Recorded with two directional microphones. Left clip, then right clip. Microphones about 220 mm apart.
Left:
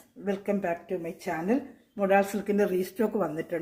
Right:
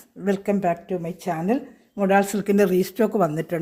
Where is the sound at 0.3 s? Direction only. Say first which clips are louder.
Right 7 dB; 50° right (ahead or behind).